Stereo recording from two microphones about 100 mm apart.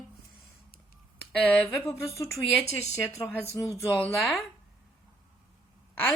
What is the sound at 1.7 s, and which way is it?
Speech, 30° left (ahead or behind).